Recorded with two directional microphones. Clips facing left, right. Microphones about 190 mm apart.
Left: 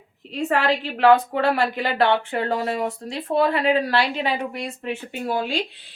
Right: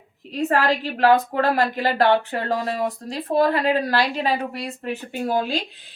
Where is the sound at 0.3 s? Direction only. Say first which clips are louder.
Right 1 dB; 40° right (ahead or behind).